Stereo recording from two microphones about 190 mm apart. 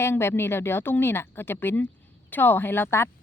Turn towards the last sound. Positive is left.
turn(degrees=10)  # may be behind; listen again after turning